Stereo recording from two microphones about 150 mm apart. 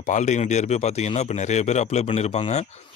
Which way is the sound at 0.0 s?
50° left (ahead or behind).